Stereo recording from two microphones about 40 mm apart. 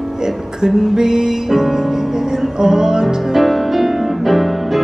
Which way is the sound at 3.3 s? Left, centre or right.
Centre.